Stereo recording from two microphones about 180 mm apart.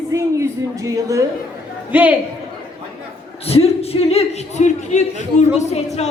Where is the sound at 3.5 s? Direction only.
35° left (ahead or behind).